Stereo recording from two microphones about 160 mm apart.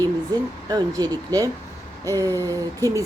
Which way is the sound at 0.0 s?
25° right (ahead or behind).